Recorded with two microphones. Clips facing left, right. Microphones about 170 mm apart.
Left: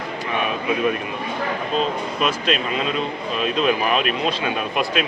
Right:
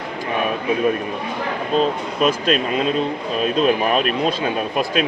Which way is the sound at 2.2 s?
40° right (ahead or behind).